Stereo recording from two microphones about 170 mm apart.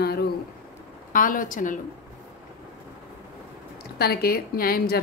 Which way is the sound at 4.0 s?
65° left (ahead or behind).